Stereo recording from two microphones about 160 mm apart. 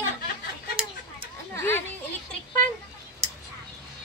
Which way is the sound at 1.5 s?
15° left (ahead or behind).